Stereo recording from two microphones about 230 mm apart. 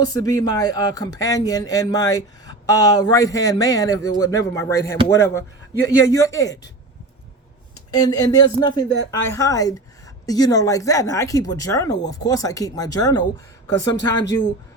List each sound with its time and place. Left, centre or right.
0.0 s speech: centre
7.9 s speech: centre